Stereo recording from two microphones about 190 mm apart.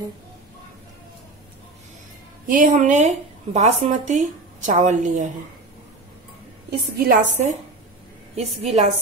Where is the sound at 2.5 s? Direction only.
45° right (ahead or behind).